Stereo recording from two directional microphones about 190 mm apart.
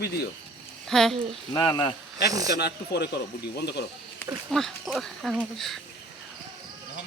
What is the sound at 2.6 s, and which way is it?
Speech, 60° left (ahead or behind).